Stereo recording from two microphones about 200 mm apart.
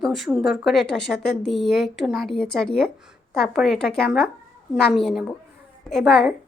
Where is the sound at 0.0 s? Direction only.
Centre (ahead or behind).